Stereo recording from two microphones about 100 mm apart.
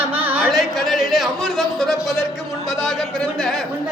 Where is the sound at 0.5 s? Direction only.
Centre (ahead or behind).